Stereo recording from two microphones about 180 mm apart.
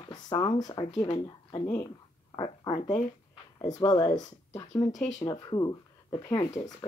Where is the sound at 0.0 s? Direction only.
25° left (ahead or behind).